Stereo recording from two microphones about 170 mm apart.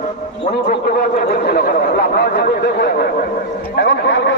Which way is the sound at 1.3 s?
65° left (ahead or behind).